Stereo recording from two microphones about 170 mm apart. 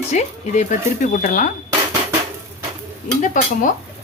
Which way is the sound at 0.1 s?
40° left (ahead or behind).